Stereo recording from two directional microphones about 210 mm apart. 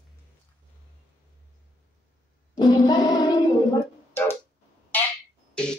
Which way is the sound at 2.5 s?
20° left (ahead or behind).